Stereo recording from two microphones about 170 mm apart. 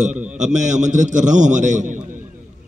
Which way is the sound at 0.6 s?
45° right (ahead or behind).